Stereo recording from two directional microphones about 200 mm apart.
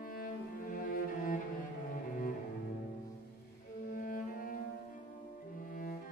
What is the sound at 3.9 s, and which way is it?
Cello, 45° left (ahead or behind).